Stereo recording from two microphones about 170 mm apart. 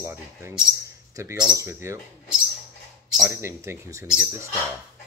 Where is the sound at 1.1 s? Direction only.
20° right (ahead or behind).